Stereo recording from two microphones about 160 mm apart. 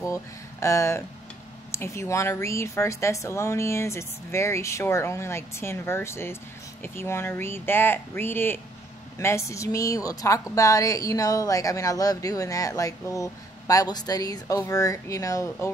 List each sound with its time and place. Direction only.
0.0 s a woman's voice: 20° left (ahead or behind)